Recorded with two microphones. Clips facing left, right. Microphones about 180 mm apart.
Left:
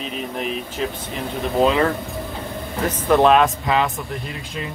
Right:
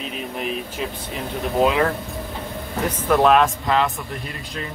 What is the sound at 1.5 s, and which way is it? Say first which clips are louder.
Speech: left 1 dB; 5° right (ahead or behind).